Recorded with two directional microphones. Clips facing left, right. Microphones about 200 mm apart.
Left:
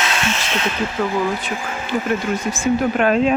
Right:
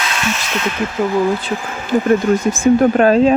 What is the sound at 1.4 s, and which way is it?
Speech, 35° right (ahead or behind).